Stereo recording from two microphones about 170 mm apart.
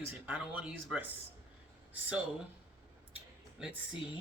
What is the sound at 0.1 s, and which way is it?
Speech, 10° right (ahead or behind).